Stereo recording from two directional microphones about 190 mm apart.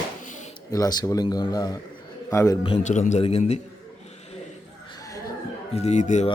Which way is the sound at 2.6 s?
35° left (ahead or behind).